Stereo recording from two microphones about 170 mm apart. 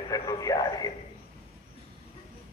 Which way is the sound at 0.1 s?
20° left (ahead or behind).